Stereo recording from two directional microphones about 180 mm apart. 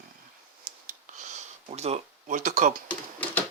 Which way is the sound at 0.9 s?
45° right (ahead or behind).